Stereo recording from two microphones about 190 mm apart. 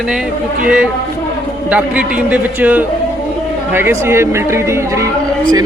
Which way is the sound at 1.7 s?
5° right (ahead or behind).